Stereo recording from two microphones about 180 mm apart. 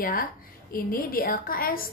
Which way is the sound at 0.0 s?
50° left (ahead or behind).